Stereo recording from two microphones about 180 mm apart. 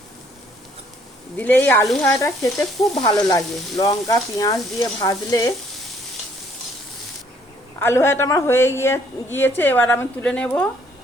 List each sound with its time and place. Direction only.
1.4 s a woman's voice: 10° left (ahead or behind)
3.0 s frying: 20° left (ahead or behind)
7.8 s a woman's voice: 15° left (ahead or behind)